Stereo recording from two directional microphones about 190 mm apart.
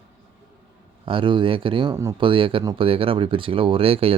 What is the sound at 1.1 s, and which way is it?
Speech, 25° right (ahead or behind).